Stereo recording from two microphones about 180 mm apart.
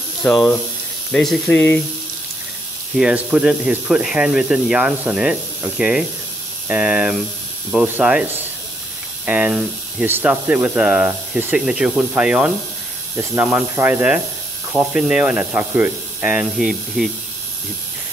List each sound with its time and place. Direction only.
0.2 s speech: 10° left (ahead or behind)
3.0 s speech: 5° right (ahead or behind)